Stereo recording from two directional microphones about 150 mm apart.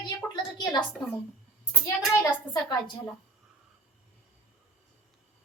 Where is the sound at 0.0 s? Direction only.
30° left (ahead or behind).